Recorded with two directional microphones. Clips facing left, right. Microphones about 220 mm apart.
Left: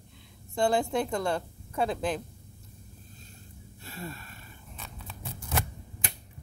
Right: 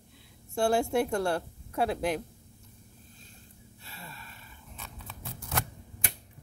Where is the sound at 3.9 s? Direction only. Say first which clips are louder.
Left 8 dB; 45° left (ahead or behind).